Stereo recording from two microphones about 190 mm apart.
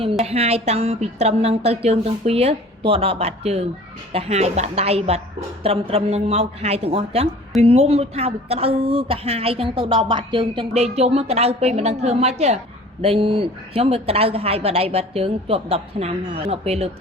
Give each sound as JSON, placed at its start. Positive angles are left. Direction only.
{"t": 0.0, "sound": "a woman's voice", "side_deg": -30}